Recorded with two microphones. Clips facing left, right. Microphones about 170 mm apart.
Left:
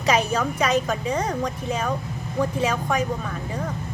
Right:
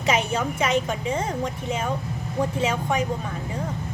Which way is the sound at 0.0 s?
25° right (ahead or behind).